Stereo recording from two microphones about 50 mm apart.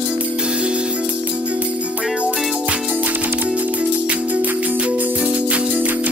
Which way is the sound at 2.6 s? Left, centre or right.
Right.